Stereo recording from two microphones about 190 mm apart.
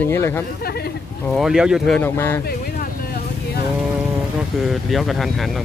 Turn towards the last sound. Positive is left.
turn(degrees=0)  # may be behind; listen again after turning